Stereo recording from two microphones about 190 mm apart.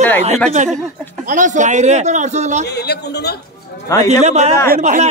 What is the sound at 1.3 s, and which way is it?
A man's voice, 40° right (ahead or behind).